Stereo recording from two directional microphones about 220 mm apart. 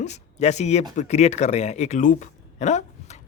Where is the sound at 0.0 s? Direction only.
30° left (ahead or behind).